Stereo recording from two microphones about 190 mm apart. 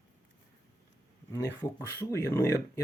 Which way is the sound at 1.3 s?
15° left (ahead or behind).